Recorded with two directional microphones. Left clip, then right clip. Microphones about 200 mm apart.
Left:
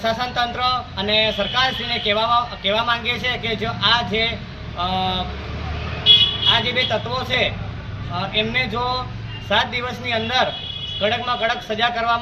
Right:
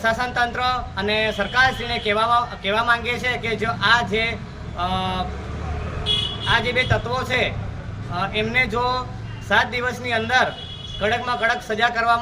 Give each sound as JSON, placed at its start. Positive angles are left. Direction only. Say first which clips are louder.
{"t": 0.0, "sound": "speech", "louder": "even", "side_deg": -10}
{"t": 6.5, "sound": "speech", "louder": "left 1 dB", "side_deg": -10}